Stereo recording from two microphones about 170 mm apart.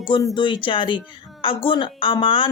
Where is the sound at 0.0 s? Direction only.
30° left (ahead or behind).